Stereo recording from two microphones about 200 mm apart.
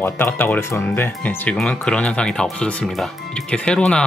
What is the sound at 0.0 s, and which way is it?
Speech, 10° left (ahead or behind).